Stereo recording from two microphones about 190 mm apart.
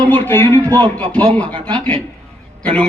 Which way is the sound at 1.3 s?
5° left (ahead or behind).